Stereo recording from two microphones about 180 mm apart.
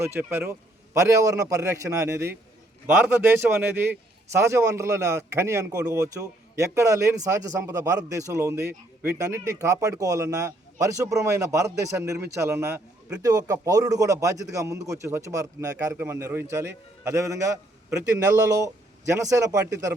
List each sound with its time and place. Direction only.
0.0 s a man's voice: 15° right (ahead or behind)